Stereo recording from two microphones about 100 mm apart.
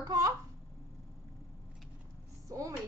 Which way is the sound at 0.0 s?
35° right (ahead or behind).